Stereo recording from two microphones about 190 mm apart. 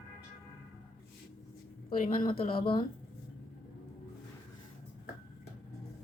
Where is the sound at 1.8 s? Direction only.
45° left (ahead or behind).